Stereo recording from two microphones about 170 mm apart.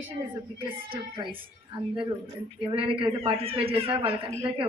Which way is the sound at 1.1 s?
30° right (ahead or behind).